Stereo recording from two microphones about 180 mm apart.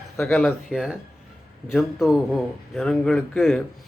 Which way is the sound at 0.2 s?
5° left (ahead or behind).